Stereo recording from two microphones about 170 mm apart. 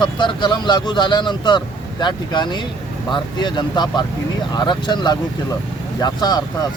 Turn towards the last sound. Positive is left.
turn(degrees=25)  # may be behind; listen again after turning